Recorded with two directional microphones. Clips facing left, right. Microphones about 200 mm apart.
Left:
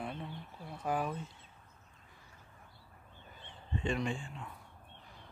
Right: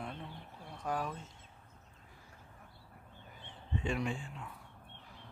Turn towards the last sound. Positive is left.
turn(degrees=-5)  # may be behind; listen again after turning